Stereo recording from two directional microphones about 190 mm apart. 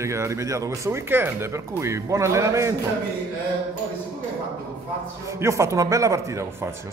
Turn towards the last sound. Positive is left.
turn(degrees=-15)  # may be behind; listen again after turning